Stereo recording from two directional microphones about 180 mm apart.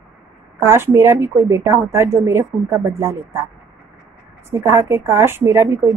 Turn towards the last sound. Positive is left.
turn(degrees=-15)  # may be behind; listen again after turning